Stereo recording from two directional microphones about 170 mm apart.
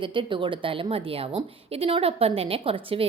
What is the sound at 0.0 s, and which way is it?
A woman's voice, 30° right (ahead or behind).